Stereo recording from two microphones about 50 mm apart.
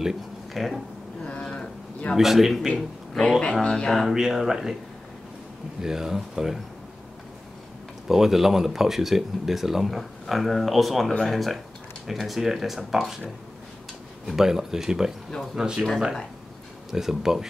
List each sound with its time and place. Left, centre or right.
0.0 s speech: centre
1.2 s a sound: centre
2.1 s speech: centre
3.2 s speech: centre
4.1 s speech: centre
5.8 s speech: centre
8.1 s speech: centre
14.2 s speech: centre
16.9 s speech: centre